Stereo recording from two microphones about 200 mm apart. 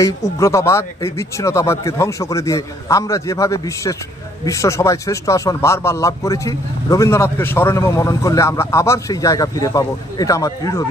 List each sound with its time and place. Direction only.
0.0 s a man's voice: 15° left (ahead or behind)